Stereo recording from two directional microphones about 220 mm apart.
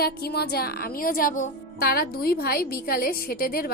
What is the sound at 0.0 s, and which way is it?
A woman's voice, 45° left (ahead or behind).